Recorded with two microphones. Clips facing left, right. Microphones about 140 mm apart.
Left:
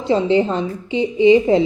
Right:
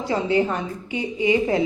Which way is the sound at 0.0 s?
25° left (ahead or behind).